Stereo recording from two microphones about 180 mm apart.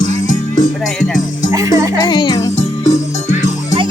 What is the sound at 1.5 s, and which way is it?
Music, 20° right (ahead or behind).